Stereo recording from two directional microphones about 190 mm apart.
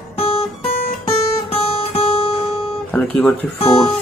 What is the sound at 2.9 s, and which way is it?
Speech, 10° left (ahead or behind).